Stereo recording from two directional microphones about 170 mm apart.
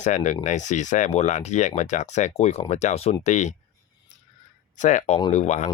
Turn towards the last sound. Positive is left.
turn(degrees=45)  # may be behind; listen again after turning